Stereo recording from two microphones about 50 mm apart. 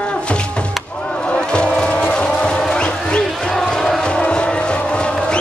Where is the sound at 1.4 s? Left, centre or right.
Centre.